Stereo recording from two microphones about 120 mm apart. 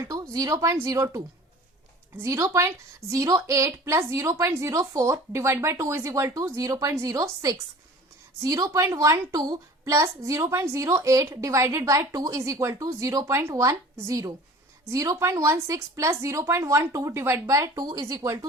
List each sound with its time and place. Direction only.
0.1 s speech: 30° right (ahead or behind)
2.2 s a woman's voice: 25° right (ahead or behind)